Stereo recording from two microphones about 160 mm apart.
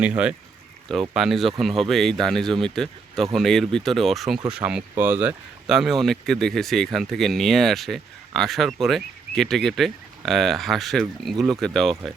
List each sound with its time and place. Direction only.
0.0 s speech: 5° right (ahead or behind)